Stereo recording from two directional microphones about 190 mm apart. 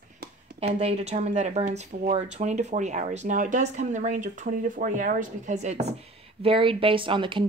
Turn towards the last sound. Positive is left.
turn(degrees=-25)  # may be behind; listen again after turning